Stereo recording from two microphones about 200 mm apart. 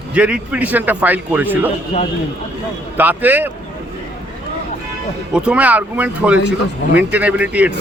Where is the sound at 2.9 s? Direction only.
10° right (ahead or behind).